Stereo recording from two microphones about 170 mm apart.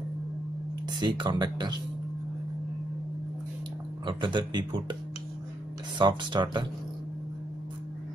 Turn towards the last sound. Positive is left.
turn(degrees=-25)  # may be behind; listen again after turning